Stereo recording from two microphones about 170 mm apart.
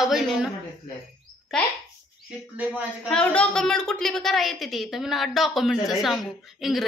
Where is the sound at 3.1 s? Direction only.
5° left (ahead or behind).